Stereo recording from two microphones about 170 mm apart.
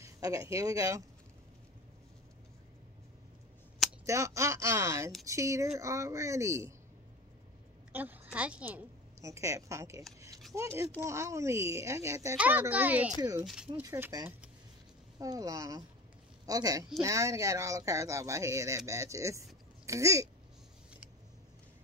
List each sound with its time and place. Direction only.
0.0 s speech: 20° right (ahead or behind)
4.0 s speech: 20° right (ahead or behind)
7.9 s a woman's voice: 10° right (ahead or behind)
13.2 s speech: 20° right (ahead or behind)